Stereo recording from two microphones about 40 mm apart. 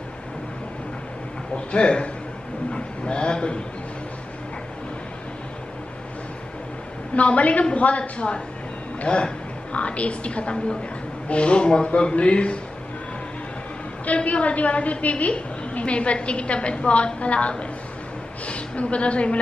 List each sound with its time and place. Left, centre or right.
1.7 s speech: left
2.7 s a sound: left
7.2 s a woman's voice: left
14.0 s a woman's voice: left